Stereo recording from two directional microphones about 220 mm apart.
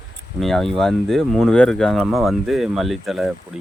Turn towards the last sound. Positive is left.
turn(degrees=0)  # may be behind; listen again after turning